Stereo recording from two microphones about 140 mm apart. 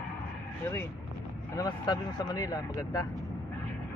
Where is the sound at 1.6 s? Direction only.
30° left (ahead or behind).